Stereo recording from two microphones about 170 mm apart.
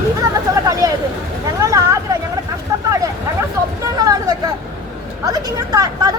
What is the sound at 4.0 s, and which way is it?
Vehicle, 20° right (ahead or behind).